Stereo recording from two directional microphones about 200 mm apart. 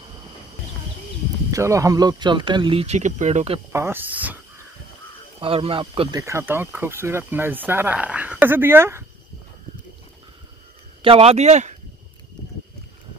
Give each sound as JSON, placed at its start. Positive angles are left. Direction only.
{"t": 1.5, "sound": "speech", "side_deg": -15}
{"t": 3.7, "sound": "speech", "side_deg": -10}
{"t": 5.4, "sound": "speech", "side_deg": -25}
{"t": 6.2, "sound": "speech", "side_deg": -10}
{"t": 11.0, "sound": "speech", "side_deg": -30}